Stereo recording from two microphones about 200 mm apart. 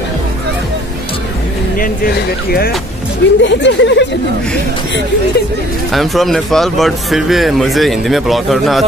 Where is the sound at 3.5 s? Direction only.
65° left (ahead or behind).